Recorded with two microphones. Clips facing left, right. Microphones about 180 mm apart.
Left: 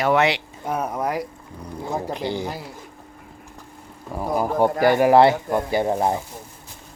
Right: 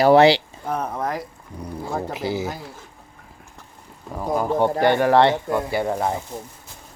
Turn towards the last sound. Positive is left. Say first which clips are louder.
# left 2 dB
turn(degrees=20)  # may be behind; listen again after turning